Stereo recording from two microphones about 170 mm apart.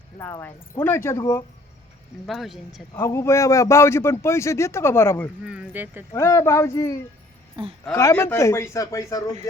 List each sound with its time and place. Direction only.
0.2 s speech: 15° left (ahead or behind)
2.2 s speech: centre (ahead or behind)
2.9 s speech: 15° left (ahead or behind)
5.5 s speech: 10° right (ahead or behind)
6.1 s speech: 15° left (ahead or behind)
7.6 s speech: 30° right (ahead or behind)
7.9 s speech: 15° left (ahead or behind)